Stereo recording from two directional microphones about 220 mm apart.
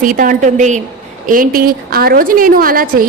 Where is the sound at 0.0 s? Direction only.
40° right (ahead or behind).